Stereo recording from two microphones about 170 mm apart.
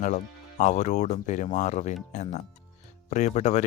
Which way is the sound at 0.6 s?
45° left (ahead or behind).